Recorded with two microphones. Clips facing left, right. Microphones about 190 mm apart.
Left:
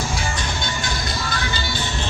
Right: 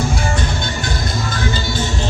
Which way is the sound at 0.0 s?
55° right (ahead or behind).